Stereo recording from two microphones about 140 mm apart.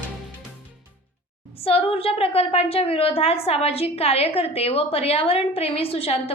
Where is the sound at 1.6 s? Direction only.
45° left (ahead or behind).